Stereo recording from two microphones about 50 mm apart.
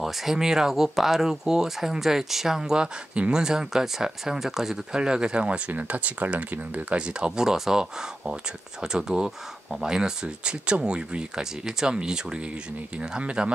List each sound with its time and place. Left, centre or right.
0.0 s speech: centre
5.7 s speech: right